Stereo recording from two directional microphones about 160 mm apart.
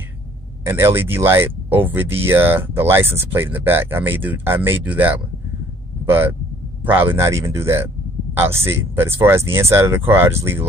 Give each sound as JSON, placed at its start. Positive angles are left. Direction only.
{"t": 0.7, "sound": "speech", "side_deg": -15}